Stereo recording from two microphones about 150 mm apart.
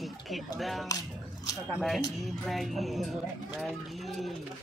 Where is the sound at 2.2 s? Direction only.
Centre (ahead or behind).